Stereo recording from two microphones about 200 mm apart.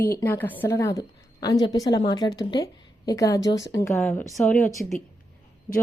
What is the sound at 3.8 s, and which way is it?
A woman's voice, 5° left (ahead or behind).